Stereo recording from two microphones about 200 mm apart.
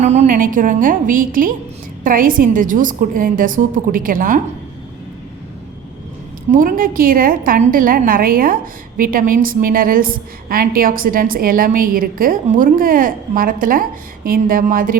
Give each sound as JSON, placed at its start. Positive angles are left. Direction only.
{"t": 0.0, "sound": "a woman's voice", "side_deg": -35}
{"t": 6.5, "sound": "a woman's voice", "side_deg": -45}